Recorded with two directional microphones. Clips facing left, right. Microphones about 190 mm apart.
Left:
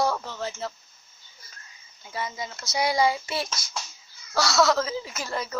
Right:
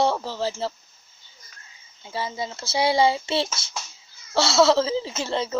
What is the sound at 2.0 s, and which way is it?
Speech, 30° right (ahead or behind).